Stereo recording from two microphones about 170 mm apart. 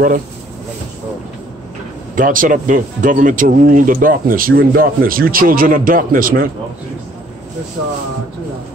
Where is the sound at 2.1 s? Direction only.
55° right (ahead or behind).